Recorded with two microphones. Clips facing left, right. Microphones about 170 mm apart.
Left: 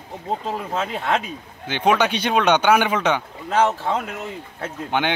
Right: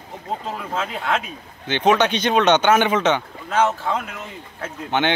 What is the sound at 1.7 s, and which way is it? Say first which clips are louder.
Speech: right 1 dB; 10° left (ahead or behind).